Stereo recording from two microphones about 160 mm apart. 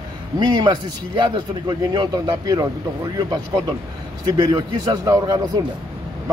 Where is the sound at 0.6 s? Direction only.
30° right (ahead or behind).